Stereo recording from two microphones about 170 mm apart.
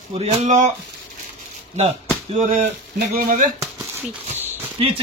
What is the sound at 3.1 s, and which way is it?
Speech, 55° right (ahead or behind).